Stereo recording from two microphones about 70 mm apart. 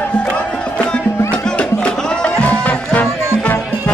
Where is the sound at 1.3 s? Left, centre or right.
Centre.